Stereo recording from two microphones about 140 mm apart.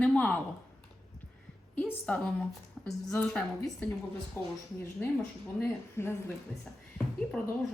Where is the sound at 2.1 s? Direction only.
10° left (ahead or behind).